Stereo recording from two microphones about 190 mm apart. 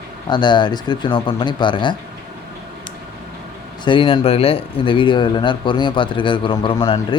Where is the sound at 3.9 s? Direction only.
25° left (ahead or behind).